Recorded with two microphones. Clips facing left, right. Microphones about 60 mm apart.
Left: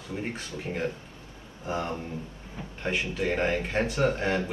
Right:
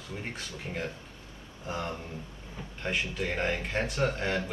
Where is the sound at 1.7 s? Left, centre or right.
Left.